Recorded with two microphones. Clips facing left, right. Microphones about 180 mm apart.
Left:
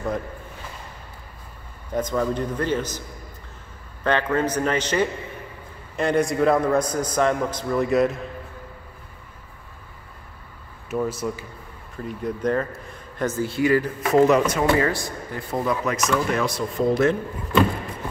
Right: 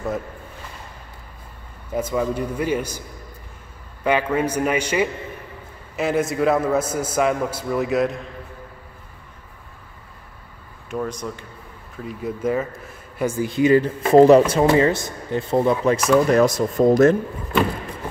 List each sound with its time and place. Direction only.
1.9 s a man's voice: 10° right (ahead or behind)
4.0 s a man's voice: 10° right (ahead or behind)
10.9 s a man's voice: 5° left (ahead or behind); by 17.2 s 45° right (ahead or behind)